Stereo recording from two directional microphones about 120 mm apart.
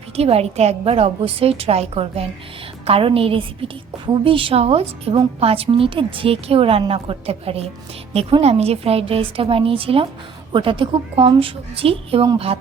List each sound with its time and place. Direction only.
0.2 s a woman's voice: 55° right (ahead or behind)